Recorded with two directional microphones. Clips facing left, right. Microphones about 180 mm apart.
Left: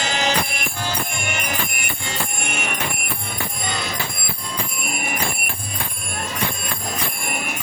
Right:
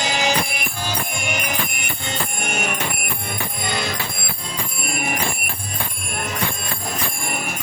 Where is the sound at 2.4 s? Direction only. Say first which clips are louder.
Right 5 dB; 40° right (ahead or behind).